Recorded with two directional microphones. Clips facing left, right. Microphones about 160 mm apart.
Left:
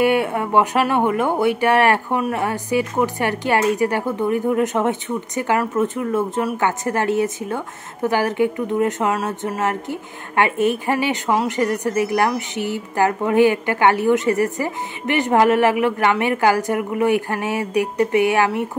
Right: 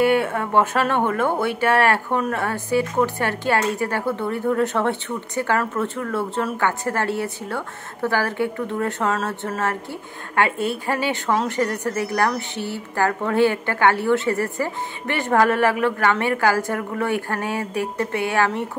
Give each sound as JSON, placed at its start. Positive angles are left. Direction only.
{"t": 0.0, "sound": "speech", "side_deg": 15}